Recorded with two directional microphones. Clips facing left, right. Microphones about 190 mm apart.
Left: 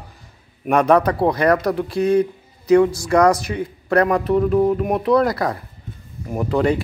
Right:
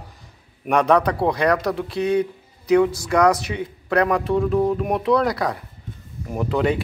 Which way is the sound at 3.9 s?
Centre (ahead or behind).